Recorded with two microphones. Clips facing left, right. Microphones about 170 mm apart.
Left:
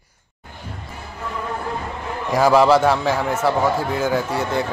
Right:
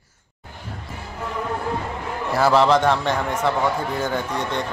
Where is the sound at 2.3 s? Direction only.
10° left (ahead or behind).